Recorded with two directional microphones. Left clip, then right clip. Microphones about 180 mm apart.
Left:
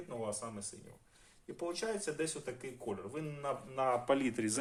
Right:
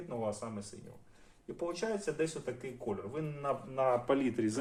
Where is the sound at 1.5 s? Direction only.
25° left (ahead or behind).